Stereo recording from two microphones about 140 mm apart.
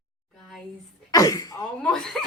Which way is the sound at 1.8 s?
5° left (ahead or behind).